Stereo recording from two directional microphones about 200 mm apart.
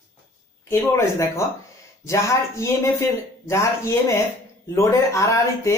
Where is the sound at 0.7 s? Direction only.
15° left (ahead or behind).